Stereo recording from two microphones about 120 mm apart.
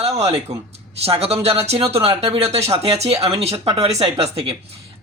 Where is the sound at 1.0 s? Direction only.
55° right (ahead or behind).